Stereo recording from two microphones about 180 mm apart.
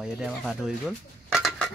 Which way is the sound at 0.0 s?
5° right (ahead or behind).